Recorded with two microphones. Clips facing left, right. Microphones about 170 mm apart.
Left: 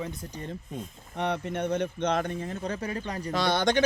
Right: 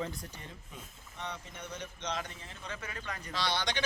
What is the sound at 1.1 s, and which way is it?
Speech, 65° left (ahead or behind).